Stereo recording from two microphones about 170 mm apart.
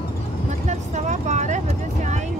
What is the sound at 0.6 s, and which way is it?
Vehicle, 45° right (ahead or behind).